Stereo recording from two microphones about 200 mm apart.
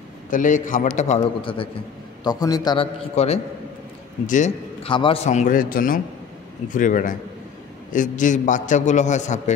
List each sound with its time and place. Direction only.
0.3 s a man's voice: 40° left (ahead or behind)
4.8 s a man's voice: 25° left (ahead or behind)